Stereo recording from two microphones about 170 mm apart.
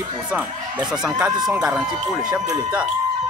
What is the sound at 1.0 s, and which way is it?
Speech, 5° right (ahead or behind).